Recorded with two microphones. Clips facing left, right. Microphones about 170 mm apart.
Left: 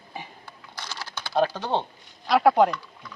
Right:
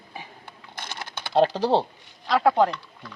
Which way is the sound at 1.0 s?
55° right (ahead or behind).